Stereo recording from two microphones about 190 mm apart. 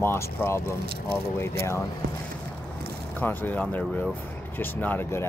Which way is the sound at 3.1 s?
10° left (ahead or behind).